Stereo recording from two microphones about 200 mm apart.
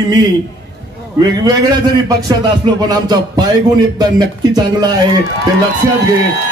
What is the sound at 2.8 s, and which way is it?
A man's voice, 20° right (ahead or behind).